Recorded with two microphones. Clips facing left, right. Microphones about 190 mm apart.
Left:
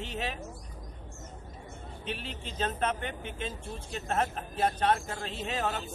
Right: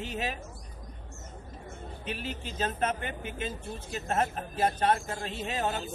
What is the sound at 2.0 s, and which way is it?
Speech, 5° right (ahead or behind).